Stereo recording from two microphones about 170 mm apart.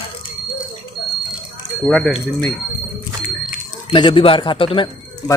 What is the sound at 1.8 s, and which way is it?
Speech, centre (ahead or behind).